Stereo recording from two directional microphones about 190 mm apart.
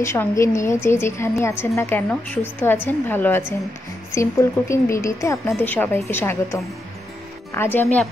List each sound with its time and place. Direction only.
0.0 s a woman's voice: 15° left (ahead or behind)